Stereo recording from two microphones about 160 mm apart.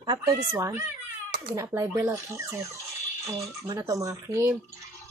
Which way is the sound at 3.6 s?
20° right (ahead or behind).